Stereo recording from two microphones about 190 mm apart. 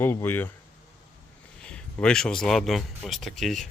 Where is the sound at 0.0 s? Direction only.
10° left (ahead or behind).